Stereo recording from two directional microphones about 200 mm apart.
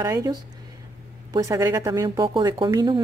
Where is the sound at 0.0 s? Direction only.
15° right (ahead or behind).